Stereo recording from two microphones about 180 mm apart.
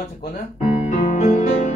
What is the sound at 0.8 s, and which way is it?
Music, 45° left (ahead or behind).